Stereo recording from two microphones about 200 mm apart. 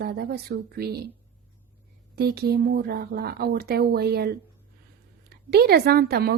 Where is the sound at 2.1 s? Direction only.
50° right (ahead or behind).